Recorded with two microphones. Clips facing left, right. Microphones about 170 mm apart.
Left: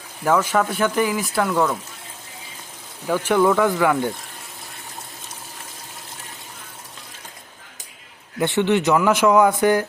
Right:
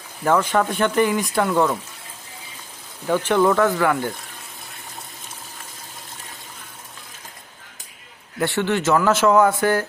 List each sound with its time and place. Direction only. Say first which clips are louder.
0.3 s speech: even; 5° left (ahead or behind)
3.1 s speech: even; 5° left (ahead or behind)
8.4 s speech: left 3 dB; 20° left (ahead or behind)